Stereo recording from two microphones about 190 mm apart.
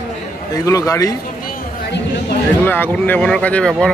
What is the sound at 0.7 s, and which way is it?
Speech, 15° left (ahead or behind).